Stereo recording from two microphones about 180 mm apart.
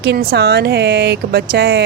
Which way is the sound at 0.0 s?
60° right (ahead or behind).